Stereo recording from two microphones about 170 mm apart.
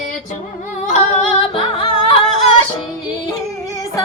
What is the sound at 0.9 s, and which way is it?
Yodeling, 45° left (ahead or behind).